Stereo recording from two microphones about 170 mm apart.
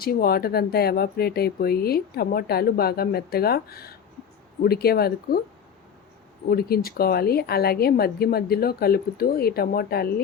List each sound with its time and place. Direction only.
0.0 s speech: 60° left (ahead or behind)
6.5 s speech: 65° left (ahead or behind)